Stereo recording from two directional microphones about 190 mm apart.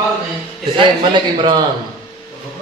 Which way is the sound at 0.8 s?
25° right (ahead or behind).